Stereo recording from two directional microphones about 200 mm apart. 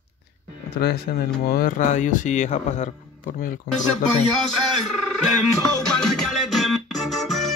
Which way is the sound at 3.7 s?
50° left (ahead or behind).